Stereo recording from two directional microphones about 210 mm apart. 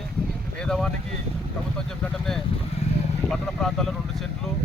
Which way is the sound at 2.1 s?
Centre (ahead or behind).